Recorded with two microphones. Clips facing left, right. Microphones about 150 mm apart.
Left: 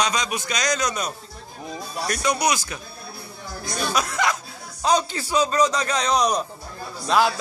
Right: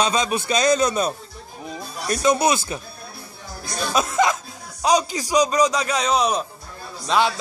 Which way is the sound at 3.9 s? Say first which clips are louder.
Right 5 dB; 25° right (ahead or behind).